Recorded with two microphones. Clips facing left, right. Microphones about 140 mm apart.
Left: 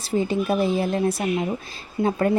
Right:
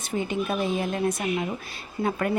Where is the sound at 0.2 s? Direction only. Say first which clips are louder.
Left 5 dB; 35° left (ahead or behind).